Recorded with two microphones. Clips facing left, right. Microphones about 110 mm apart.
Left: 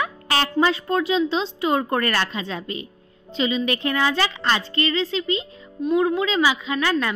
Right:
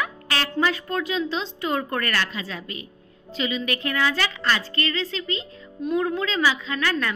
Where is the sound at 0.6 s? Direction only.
25° left (ahead or behind).